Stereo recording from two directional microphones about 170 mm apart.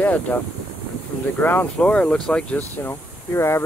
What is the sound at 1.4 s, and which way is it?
Speech, 10° left (ahead or behind).